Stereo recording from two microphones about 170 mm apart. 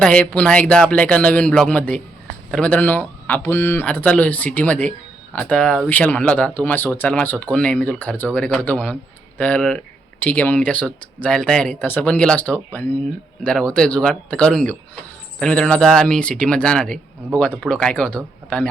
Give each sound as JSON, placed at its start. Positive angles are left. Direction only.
{"t": 0.0, "sound": "speech", "side_deg": 5}